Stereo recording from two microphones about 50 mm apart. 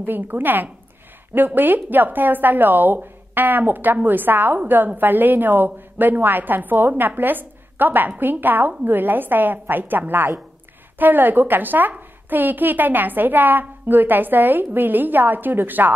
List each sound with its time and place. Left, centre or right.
0.0 s a woman's voice: right